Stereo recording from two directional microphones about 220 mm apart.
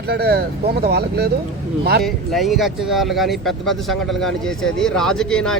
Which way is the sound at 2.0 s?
Centre (ahead or behind).